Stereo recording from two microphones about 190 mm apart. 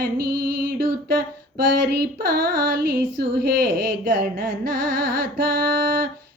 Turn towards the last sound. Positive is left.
turn(degrees=-50)  # may be behind; listen again after turning